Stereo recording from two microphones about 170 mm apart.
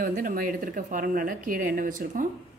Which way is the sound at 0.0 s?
55° right (ahead or behind).